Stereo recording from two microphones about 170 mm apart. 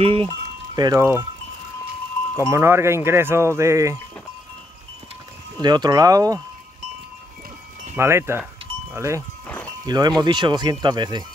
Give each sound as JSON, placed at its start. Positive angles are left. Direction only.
{"t": 0.0, "sound": "speech", "side_deg": -35}
{"t": 0.7, "sound": "speech", "side_deg": -25}
{"t": 2.3, "sound": "speech", "side_deg": -15}
{"t": 5.6, "sound": "speech", "side_deg": -25}
{"t": 7.9, "sound": "speech", "side_deg": -15}